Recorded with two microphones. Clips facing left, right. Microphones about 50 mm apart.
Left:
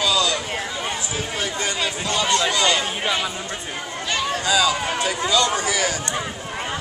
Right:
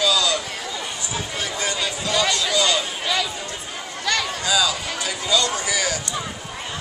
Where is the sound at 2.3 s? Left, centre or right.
Left.